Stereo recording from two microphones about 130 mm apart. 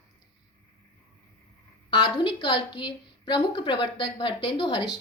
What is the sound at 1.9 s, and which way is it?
A woman's voice, 35° left (ahead or behind).